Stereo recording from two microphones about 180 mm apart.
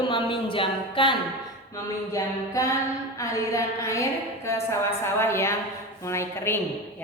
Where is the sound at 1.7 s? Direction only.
20° left (ahead or behind).